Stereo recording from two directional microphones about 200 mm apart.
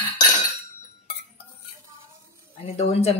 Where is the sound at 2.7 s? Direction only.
30° left (ahead or behind).